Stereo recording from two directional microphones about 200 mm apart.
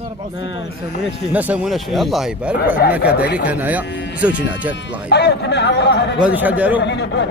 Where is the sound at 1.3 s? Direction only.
5° right (ahead or behind).